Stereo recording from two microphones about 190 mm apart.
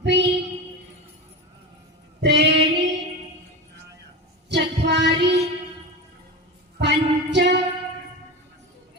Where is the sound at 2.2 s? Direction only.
65° right (ahead or behind).